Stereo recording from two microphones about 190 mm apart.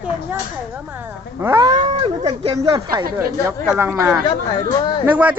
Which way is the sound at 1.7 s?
30° right (ahead or behind).